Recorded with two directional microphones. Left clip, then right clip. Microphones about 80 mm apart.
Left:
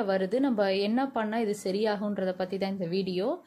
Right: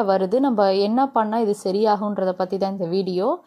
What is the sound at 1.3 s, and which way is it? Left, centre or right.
A woman's voice, right.